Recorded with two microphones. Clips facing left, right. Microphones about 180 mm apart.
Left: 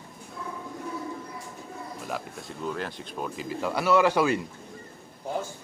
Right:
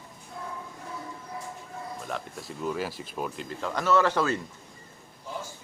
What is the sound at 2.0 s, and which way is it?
Speech, centre (ahead or behind).